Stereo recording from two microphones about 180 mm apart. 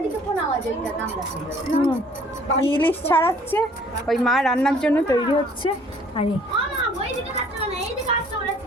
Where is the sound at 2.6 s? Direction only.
30° left (ahead or behind).